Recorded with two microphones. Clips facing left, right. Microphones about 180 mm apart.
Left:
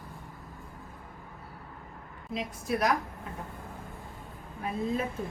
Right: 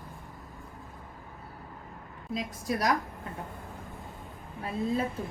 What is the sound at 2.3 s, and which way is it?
Speech, 40° right (ahead or behind).